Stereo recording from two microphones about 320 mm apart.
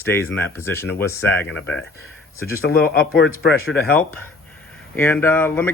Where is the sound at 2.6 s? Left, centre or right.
Left.